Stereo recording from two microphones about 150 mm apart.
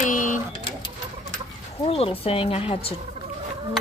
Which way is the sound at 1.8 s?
40° left (ahead or behind).